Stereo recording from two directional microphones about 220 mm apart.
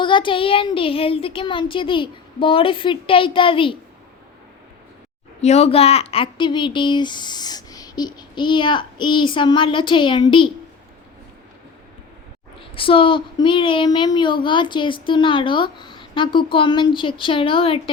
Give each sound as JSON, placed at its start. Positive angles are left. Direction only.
{"t": 0.0, "sound": "a child's voice", "side_deg": 20}
{"t": 5.4, "sound": "a child's voice", "side_deg": 30}
{"t": 12.7, "sound": "a child's voice", "side_deg": 25}